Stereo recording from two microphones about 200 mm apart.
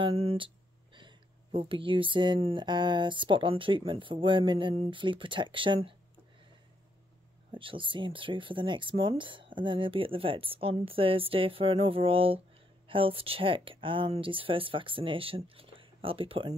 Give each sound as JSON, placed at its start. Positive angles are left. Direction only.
{"t": 0.0, "sound": "speech", "side_deg": -30}
{"t": 7.5, "sound": "speech", "side_deg": -25}